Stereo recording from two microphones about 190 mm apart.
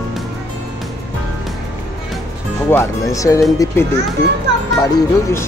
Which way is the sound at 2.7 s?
15° left (ahead or behind).